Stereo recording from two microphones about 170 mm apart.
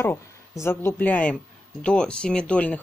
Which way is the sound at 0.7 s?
10° left (ahead or behind).